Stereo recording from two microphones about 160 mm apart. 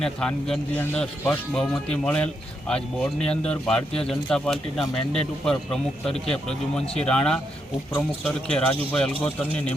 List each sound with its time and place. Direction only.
0.0 s speech: 5° left (ahead or behind)